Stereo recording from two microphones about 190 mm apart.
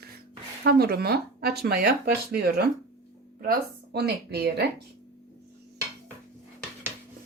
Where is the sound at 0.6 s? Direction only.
55° right (ahead or behind).